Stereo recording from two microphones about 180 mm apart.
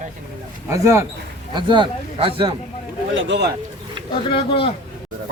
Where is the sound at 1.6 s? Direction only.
25° right (ahead or behind).